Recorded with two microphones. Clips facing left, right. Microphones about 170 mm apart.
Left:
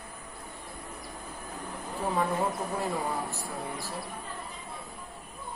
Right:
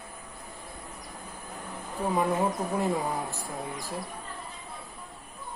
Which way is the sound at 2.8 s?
15° right (ahead or behind).